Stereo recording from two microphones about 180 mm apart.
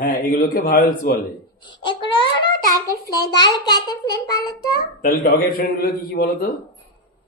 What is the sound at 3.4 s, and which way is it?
A child's voice, 20° left (ahead or behind).